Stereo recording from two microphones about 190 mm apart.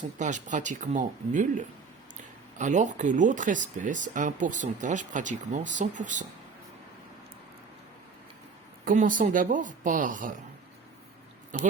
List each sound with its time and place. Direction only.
0.0 s speech: 40° right (ahead or behind)
8.8 s speech: 45° right (ahead or behind)
11.5 s speech: 45° right (ahead or behind)